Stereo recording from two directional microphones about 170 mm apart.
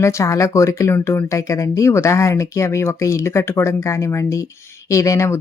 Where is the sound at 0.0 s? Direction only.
15° left (ahead or behind).